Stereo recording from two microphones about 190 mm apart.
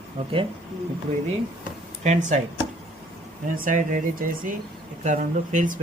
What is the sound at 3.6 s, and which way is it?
Speech, 45° right (ahead or behind).